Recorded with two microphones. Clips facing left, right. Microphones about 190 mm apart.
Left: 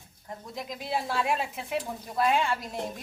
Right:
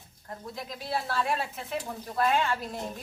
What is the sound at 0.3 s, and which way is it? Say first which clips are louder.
Speech: left 1 dB; 15° left (ahead or behind).